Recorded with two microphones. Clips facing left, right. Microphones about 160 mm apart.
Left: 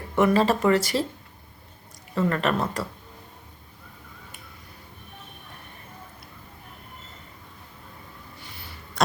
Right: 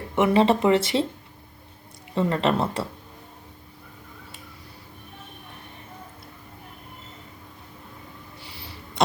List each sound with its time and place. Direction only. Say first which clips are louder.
0.2 s speech: right 1 dB; 20° right (ahead or behind)
2.1 s speech: right 2 dB; 25° right (ahead or behind)